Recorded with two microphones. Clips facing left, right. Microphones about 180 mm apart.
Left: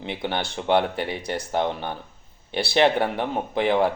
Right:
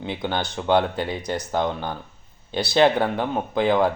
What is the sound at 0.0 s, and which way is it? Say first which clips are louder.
Speech: right 1 dB; 25° left (ahead or behind).